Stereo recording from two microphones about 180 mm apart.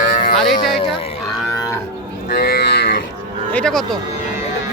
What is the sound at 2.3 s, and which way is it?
Livestock, 60° left (ahead or behind).